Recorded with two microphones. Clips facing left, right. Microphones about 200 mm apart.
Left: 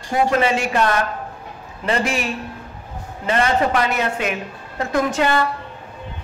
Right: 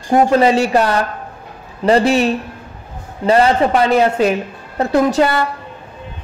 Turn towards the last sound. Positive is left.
turn(degrees=-35)  # may be behind; listen again after turning